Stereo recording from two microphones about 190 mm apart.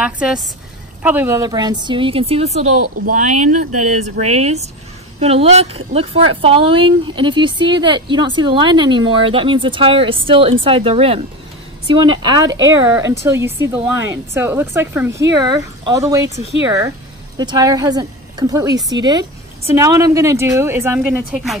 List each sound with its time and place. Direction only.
0.0 s a woman's voice: 5° right (ahead or behind)